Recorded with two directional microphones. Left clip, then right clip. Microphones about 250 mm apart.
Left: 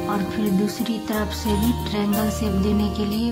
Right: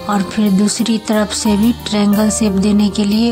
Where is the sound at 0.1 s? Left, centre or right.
Right.